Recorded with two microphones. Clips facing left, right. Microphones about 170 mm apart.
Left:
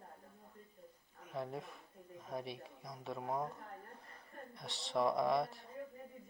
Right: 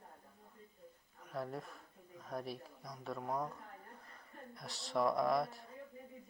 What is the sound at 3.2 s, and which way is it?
Speech, 25° left (ahead or behind).